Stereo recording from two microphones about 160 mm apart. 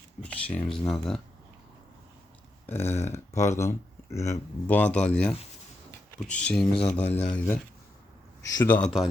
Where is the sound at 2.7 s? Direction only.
15° left (ahead or behind).